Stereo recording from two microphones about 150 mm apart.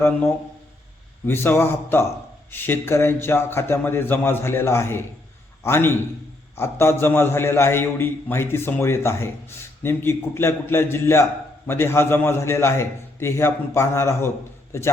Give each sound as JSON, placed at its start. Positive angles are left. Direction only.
{"t": 1.3, "sound": "a man's voice", "side_deg": 15}